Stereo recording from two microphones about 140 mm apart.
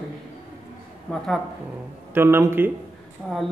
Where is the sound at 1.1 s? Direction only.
5° left (ahead or behind).